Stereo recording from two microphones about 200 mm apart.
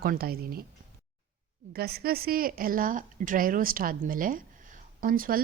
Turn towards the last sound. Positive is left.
turn(degrees=-45)  # may be behind; listen again after turning